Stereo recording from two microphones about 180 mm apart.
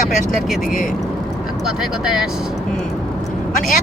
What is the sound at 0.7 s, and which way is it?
Speech, 50° left (ahead or behind).